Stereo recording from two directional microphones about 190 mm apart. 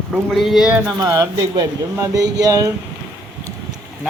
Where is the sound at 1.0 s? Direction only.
20° right (ahead or behind).